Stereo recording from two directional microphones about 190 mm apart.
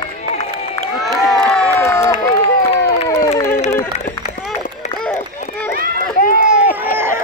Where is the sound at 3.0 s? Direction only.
15° left (ahead or behind).